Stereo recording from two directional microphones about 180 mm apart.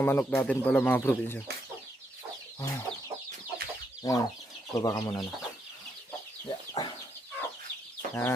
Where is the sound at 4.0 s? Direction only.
20° left (ahead or behind).